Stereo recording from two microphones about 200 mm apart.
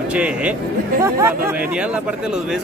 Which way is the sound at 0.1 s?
5° right (ahead or behind).